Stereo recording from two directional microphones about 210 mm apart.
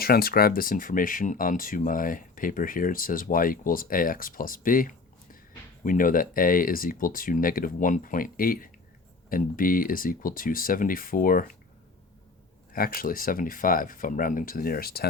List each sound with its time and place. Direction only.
0.0 s speech: 45° left (ahead or behind)
12.7 s speech: 45° left (ahead or behind)